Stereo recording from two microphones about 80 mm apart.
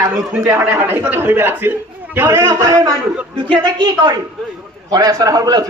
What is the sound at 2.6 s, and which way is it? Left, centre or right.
Speech, right.